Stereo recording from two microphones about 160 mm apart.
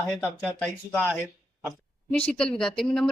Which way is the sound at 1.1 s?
Centre (ahead or behind).